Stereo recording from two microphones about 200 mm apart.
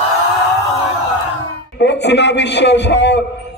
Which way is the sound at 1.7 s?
60° left (ahead or behind).